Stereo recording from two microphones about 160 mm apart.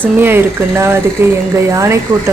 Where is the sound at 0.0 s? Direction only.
15° right (ahead or behind).